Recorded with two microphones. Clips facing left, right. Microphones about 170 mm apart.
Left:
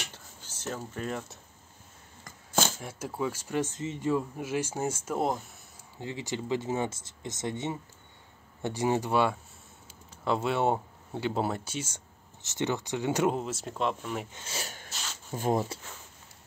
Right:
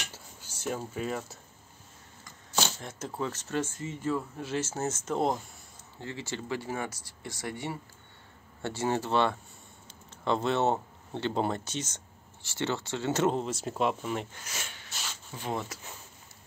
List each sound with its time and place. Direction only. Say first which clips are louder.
0.1 s dishes: right 1 dB; 10° right (ahead or behind)
0.9 s speech: right 1 dB; 5° right (ahead or behind)
2.2 s a sound: left 3 dB; 50° left (ahead or behind)
2.8 s speech: left 2 dB; 10° left (ahead or behind)
5.9 s speech: left 3 dB; 15° left (ahead or behind); by 14.2 s 5° right (ahead or behind)
14.3 s speech: left 3 dB; 30° left (ahead or behind)
15.3 s speech: left 7 dB; 45° left (ahead or behind)